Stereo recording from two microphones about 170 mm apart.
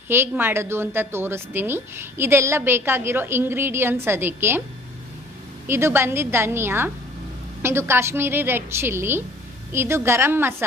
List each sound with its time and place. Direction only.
0.1 s a woman's voice: 15° right (ahead or behind)
5.7 s a woman's voice: 15° right (ahead or behind)